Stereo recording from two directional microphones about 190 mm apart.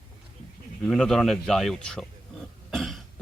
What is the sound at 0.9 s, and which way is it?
A man's voice, centre (ahead or behind).